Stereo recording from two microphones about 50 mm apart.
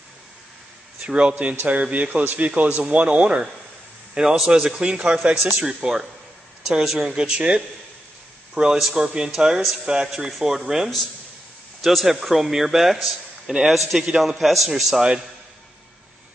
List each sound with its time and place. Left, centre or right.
1.0 s a man's voice: right
4.1 s a man's voice: centre
7.2 s speech: right
9.3 s a man's voice: centre